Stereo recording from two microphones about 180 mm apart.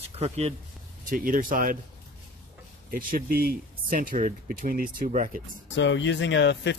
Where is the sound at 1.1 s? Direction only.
50° right (ahead or behind).